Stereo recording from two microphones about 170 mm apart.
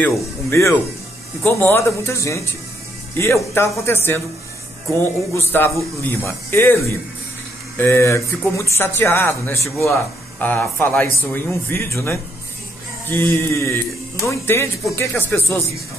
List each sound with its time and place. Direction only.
0.0 s speech: 15° left (ahead or behind)
5.3 s speech: 15° left (ahead or behind)